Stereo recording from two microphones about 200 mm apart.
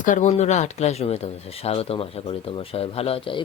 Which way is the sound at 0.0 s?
40° left (ahead or behind).